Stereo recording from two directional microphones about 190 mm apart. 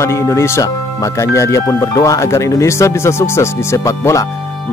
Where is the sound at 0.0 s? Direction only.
15° left (ahead or behind).